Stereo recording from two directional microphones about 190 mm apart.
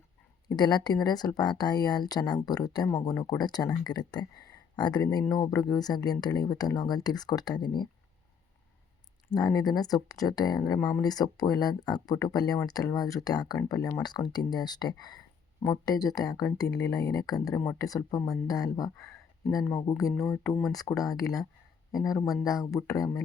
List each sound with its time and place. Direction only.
0.4 s speech: 20° left (ahead or behind)
9.3 s speech: 20° left (ahead or behind)
18.9 s a sound: centre (ahead or behind)
20.1 s speech: centre (ahead or behind)
20.7 s speech: 20° left (ahead or behind)